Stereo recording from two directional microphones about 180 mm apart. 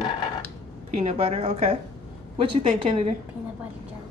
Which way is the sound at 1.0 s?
35° right (ahead or behind).